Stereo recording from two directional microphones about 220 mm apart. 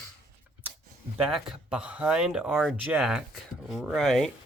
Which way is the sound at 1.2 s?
Centre (ahead or behind).